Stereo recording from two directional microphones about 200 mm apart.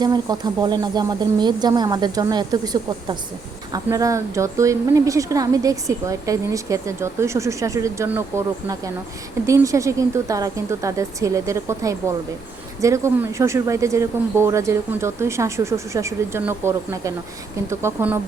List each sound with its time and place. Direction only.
0.0 s speech: 20° right (ahead or behind)
3.7 s a woman's voice: 15° right (ahead or behind)